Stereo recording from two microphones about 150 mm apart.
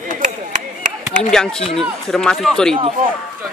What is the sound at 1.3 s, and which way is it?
Speech, 5° left (ahead or behind).